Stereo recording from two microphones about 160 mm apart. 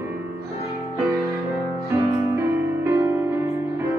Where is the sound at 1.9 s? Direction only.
15° right (ahead or behind).